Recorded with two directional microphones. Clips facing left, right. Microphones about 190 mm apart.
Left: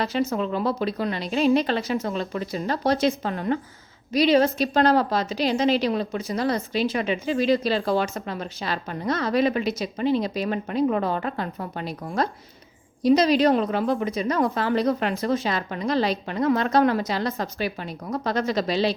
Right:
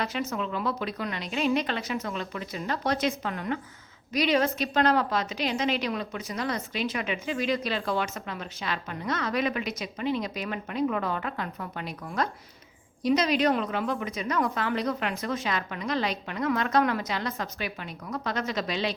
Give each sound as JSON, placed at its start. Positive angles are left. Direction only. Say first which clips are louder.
{"t": 0.0, "sound": "a woman's voice", "louder": "left 6 dB", "side_deg": 30}